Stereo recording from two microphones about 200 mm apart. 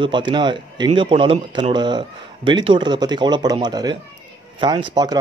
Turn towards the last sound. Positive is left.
turn(degrees=-20)  # may be behind; listen again after turning